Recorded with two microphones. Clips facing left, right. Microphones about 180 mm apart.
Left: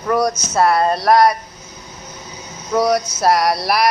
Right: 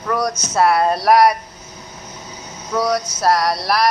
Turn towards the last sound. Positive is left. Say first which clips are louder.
# left 1 dB
turn(degrees=10)  # may be behind; listen again after turning